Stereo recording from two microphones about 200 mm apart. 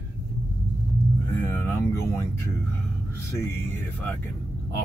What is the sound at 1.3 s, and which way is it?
Speech, 10° left (ahead or behind).